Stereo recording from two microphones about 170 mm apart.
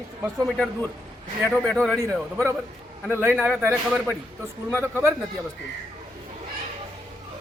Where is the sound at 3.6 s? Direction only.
10° right (ahead or behind).